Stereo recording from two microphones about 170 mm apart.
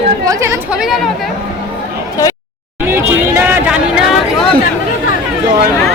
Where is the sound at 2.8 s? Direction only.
15° right (ahead or behind).